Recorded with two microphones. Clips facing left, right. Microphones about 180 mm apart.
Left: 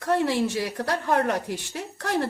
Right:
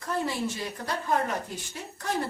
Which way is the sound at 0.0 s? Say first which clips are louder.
Left 7 dB; 75° left (ahead or behind).